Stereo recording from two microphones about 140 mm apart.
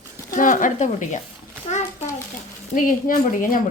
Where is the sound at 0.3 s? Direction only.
65° left (ahead or behind).